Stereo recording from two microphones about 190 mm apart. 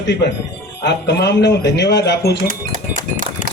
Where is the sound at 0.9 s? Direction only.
65° left (ahead or behind).